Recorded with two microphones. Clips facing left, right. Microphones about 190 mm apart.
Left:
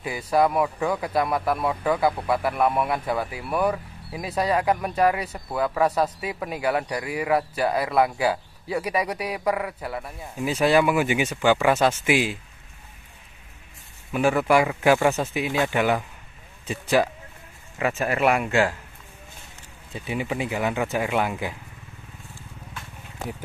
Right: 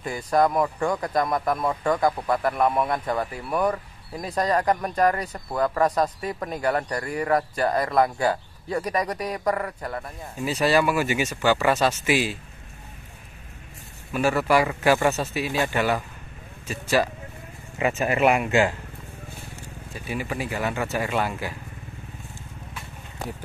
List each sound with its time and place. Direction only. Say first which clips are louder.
0.0 s a man's voice: even; 5° left (ahead or behind)
14.1 s a man's voice: left 1 dB; 15° left (ahead or behind)
17.7 s speech: right 1 dB; 10° right (ahead or behind)
19.9 s a man's voice: left 2 dB; 20° left (ahead or behind)